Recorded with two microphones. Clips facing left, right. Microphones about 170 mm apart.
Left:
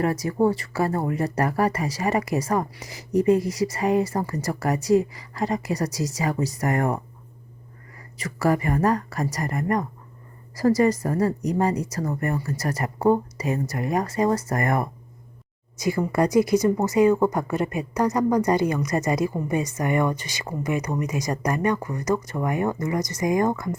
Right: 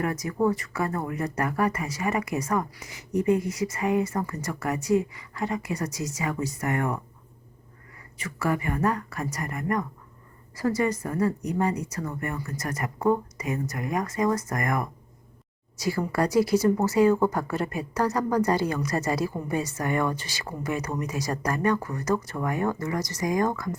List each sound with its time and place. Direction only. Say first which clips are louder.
0.0 s speech: left 4 dB; 30° left (ahead or behind)
8.2 s speech: left 5 dB; 40° left (ahead or behind)
15.8 s a woman's voice: left 4 dB; 20° left (ahead or behind)